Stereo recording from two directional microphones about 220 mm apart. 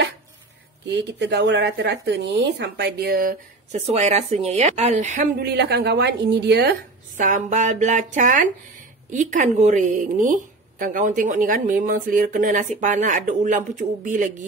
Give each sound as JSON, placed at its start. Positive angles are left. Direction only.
{"t": 0.8, "sound": "a woman's voice", "side_deg": -50}
{"t": 5.5, "sound": "a woman's voice", "side_deg": -50}